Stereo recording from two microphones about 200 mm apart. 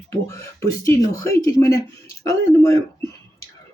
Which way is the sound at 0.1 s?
15° left (ahead or behind).